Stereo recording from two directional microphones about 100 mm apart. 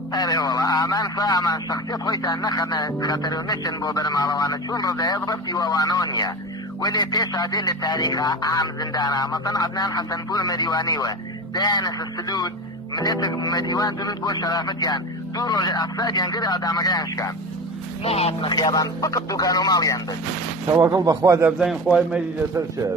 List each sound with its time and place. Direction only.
0.1 s speech: 40° left (ahead or behind)
18.0 s speech: 90° left
18.4 s speech: 45° left (ahead or behind)
20.9 s a man's voice: 40° right (ahead or behind)
21.6 s speech: centre (ahead or behind)